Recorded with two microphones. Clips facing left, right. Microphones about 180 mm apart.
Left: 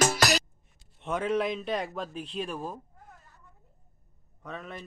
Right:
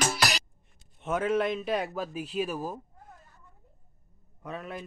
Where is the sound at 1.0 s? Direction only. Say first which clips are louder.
Right 1 dB; 5° right (ahead or behind).